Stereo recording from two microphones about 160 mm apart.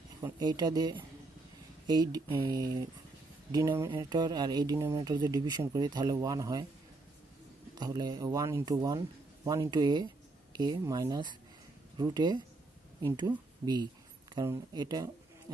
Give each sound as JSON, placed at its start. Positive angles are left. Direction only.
{"t": 0.2, "sound": "speech", "side_deg": -25}
{"t": 7.8, "sound": "speech", "side_deg": -25}